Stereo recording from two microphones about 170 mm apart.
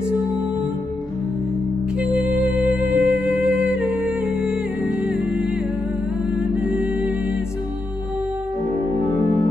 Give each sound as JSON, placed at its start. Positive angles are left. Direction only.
{"t": 2.3, "sound": "music", "side_deg": -5}